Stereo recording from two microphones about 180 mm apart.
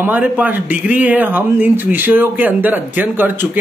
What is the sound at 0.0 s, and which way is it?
Speech, 10° right (ahead or behind).